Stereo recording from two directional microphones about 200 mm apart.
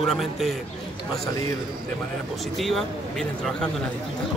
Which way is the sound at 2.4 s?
Centre (ahead or behind).